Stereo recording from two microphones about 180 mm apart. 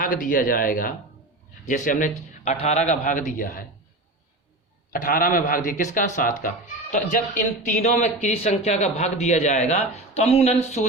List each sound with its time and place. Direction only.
0.0 s speech: 50° left (ahead or behind)
4.9 s a man's voice: 50° left (ahead or behind)